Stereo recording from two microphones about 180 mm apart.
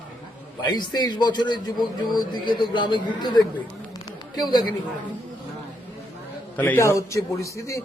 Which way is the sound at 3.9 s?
20° left (ahead or behind).